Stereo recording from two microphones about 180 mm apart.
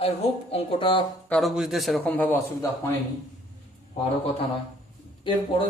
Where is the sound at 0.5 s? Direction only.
30° left (ahead or behind).